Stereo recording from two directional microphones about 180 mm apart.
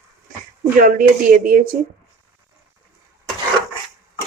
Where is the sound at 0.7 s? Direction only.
50° right (ahead or behind).